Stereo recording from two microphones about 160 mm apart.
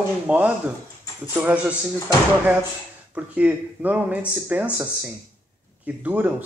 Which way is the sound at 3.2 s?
10° right (ahead or behind).